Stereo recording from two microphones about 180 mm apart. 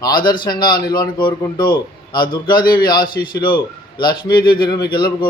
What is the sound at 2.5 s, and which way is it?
A man's voice, 55° left (ahead or behind).